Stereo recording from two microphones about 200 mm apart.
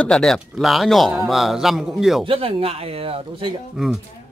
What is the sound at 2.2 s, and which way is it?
Speech, 25° right (ahead or behind).